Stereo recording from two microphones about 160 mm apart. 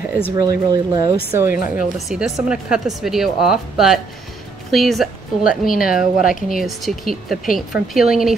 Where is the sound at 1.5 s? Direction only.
60° left (ahead or behind).